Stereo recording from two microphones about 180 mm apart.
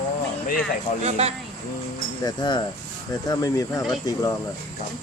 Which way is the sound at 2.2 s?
20° left (ahead or behind).